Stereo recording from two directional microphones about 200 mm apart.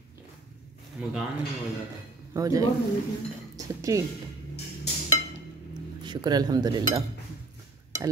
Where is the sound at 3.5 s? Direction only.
15° right (ahead or behind).